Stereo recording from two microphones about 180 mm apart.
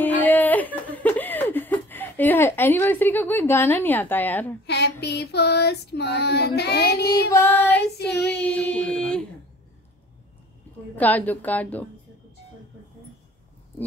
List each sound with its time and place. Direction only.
0.0 s chuckle: 10° left (ahead or behind)
4.6 s a sound: 70° left (ahead or behind)
5.0 s child singing: 65° left (ahead or behind)
7.4 s a woman's voice: 10° left (ahead or behind)
11.0 s a woman's voice: 10° left (ahead or behind)